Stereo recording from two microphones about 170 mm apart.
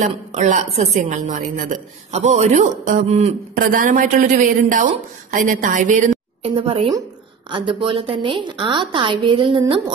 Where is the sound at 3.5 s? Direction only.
55° right (ahead or behind).